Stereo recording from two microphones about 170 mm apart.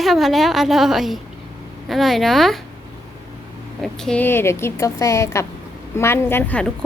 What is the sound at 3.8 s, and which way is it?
Speech, 5° left (ahead or behind).